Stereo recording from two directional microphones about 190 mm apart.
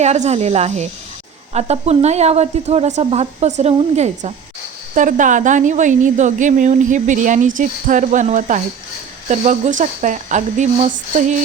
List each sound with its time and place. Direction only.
0.0 s a woman's voice: 35° right (ahead or behind)